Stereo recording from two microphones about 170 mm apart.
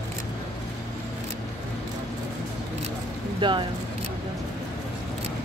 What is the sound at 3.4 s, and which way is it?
Speech, 25° right (ahead or behind).